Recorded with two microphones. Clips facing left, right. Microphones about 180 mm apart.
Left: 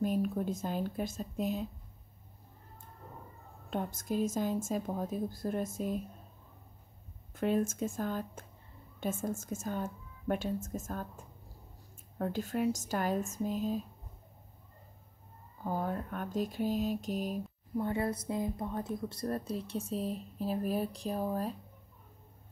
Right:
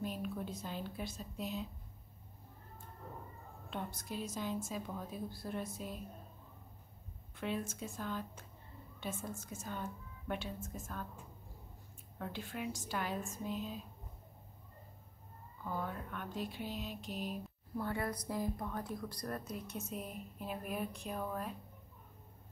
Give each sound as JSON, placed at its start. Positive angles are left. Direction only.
{"t": 0.0, "sound": "a woman's voice", "side_deg": 45}
{"t": 3.7, "sound": "a woman's voice", "side_deg": 45}
{"t": 7.3, "sound": "a woman's voice", "side_deg": 45}
{"t": 15.6, "sound": "a woman's voice", "side_deg": 40}
{"t": 17.7, "sound": "speech", "side_deg": 25}